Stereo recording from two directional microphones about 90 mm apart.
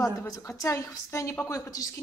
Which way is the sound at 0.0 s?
35° left (ahead or behind).